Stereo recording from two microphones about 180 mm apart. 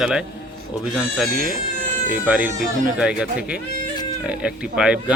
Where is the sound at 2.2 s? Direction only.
10° right (ahead or behind).